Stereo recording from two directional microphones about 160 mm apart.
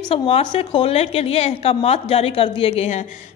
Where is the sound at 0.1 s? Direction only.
35° left (ahead or behind).